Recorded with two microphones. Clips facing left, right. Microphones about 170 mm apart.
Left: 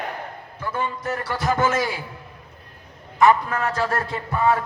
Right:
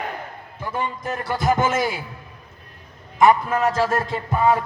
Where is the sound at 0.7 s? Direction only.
20° right (ahead or behind).